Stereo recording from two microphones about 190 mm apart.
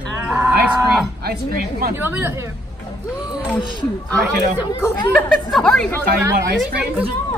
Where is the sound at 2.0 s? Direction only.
10° right (ahead or behind).